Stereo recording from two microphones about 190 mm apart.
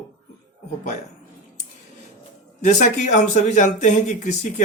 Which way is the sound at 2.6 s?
40° left (ahead or behind).